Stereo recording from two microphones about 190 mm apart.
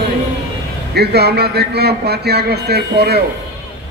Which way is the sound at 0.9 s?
60° right (ahead or behind).